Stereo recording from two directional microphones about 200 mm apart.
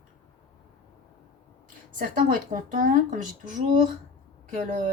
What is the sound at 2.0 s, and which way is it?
Speech, 45° right (ahead or behind).